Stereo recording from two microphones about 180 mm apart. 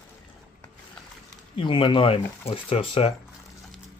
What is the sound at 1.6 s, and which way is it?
Speech, 30° left (ahead or behind).